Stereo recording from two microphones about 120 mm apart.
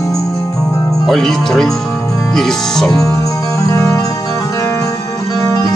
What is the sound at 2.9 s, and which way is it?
Music, 30° left (ahead or behind).